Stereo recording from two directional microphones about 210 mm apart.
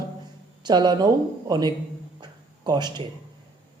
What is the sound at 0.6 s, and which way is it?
Speech, 20° right (ahead or behind).